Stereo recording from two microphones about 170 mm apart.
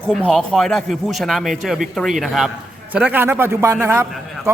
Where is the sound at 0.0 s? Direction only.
5° left (ahead or behind).